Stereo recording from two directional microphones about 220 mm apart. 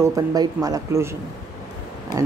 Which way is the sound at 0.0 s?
15° right (ahead or behind).